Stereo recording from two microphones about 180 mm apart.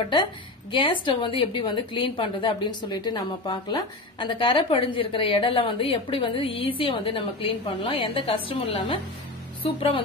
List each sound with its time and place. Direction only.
0.1 s a woman's voice: 25° left (ahead or behind)